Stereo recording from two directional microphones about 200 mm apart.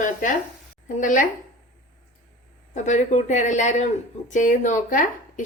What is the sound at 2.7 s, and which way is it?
Speech, 35° left (ahead or behind).